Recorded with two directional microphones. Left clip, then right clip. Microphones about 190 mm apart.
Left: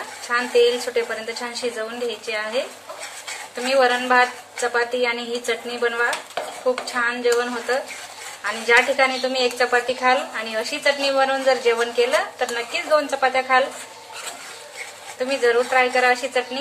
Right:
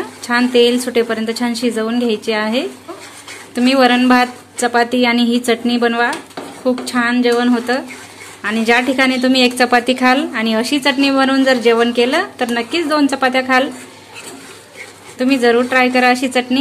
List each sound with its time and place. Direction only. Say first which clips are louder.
0.3 s a woman's voice: right 5 dB; 50° right (ahead or behind)
3.6 s a woman's voice: right 6 dB; 55° right (ahead or behind)
15.1 s a woman's voice: right 6 dB; 50° right (ahead or behind)